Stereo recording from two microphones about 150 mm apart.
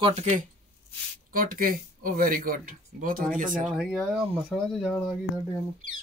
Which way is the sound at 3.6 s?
5° right (ahead or behind).